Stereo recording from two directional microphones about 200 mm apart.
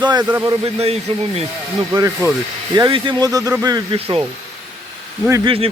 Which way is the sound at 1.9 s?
15° right (ahead or behind).